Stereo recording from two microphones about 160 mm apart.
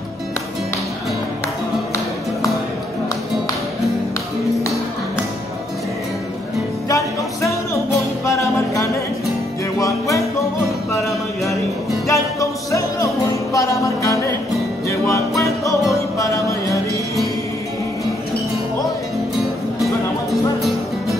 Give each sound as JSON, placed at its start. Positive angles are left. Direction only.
{"t": 6.9, "sound": "music", "side_deg": 20}
{"t": 12.1, "sound": "music", "side_deg": 20}